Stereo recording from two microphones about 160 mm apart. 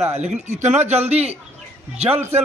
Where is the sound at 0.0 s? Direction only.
45° right (ahead or behind).